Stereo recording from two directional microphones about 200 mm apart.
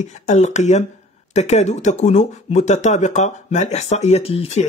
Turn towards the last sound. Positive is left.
turn(degrees=30)  # may be behind; listen again after turning